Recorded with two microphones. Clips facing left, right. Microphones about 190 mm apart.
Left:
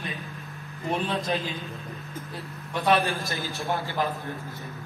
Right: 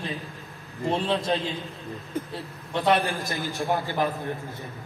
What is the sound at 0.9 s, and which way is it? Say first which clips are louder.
A man's voice: right 2 dB; 30° right (ahead or behind).